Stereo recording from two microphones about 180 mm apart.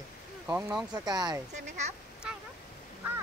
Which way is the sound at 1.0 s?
20° right (ahead or behind).